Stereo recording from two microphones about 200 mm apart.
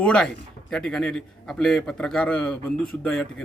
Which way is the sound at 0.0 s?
5° left (ahead or behind).